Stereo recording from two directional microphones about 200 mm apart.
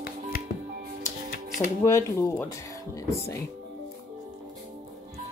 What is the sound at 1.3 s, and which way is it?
Music, 40° left (ahead or behind).